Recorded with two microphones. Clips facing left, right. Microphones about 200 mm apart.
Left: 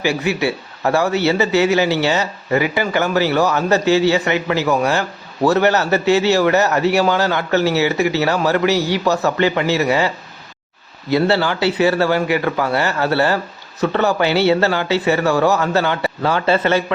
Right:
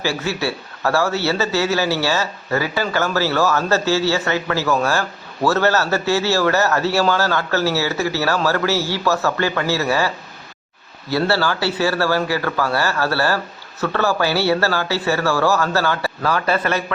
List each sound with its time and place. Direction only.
0.0 s a man's voice: 15° left (ahead or behind)
11.1 s speech: 20° left (ahead or behind)